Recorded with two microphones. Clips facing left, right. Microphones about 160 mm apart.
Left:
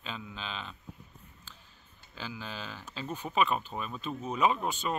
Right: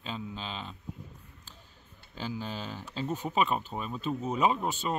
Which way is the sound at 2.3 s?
35° right (ahead or behind).